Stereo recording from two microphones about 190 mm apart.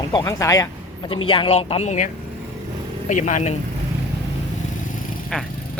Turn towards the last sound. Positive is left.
turn(degrees=5)  # may be behind; listen again after turning